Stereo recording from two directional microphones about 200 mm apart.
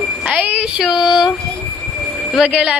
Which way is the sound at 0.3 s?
5° right (ahead or behind).